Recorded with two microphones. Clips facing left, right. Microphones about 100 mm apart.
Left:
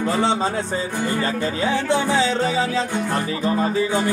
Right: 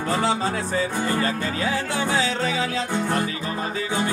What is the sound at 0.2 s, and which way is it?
Music, 30° left (ahead or behind).